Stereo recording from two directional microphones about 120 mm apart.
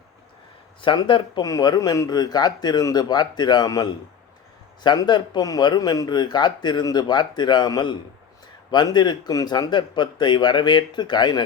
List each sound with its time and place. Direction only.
0.8 s a man's voice: 40° left (ahead or behind)